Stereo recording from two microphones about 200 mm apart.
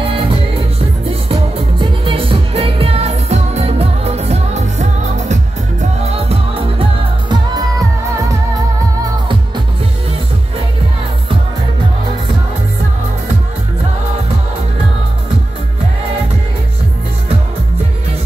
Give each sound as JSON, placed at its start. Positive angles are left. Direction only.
{"t": 1.3, "sound": "music", "side_deg": -25}